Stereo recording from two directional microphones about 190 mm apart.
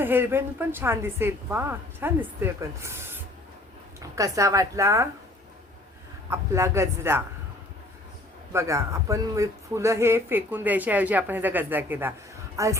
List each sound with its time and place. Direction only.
0.0 s speech: 10° right (ahead or behind)
6.3 s speech: 15° right (ahead or behind)
8.5 s speech: 15° right (ahead or behind)